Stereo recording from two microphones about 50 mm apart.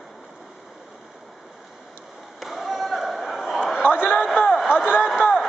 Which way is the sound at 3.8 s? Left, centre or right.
Left.